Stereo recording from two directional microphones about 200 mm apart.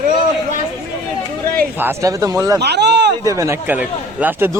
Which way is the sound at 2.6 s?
55° right (ahead or behind).